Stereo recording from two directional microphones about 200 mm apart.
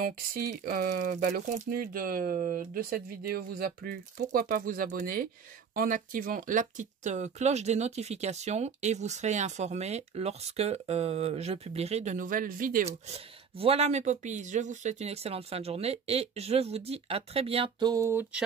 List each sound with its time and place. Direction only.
0.0 s speech: 45° right (ahead or behind); by 18.4 s 15° right (ahead or behind)